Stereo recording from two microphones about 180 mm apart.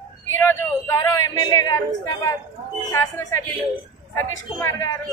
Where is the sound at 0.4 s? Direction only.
15° left (ahead or behind).